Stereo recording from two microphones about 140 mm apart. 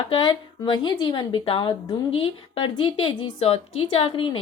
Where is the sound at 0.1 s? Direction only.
35° left (ahead or behind).